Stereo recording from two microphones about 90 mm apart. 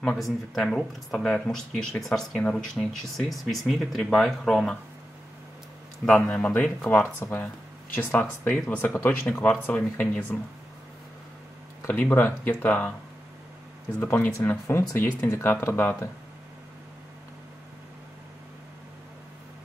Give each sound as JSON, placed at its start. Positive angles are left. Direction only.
{"t": 0.0, "sound": "speech", "side_deg": 5}
{"t": 6.0, "sound": "speech", "side_deg": 15}
{"t": 11.9, "sound": "speech", "side_deg": 25}
{"t": 14.0, "sound": "speech", "side_deg": 25}